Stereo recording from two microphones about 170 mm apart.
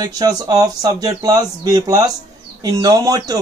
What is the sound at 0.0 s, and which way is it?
Speech, 20° right (ahead or behind).